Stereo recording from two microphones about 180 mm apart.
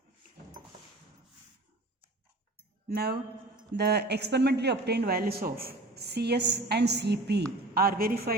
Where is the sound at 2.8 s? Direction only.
60° right (ahead or behind).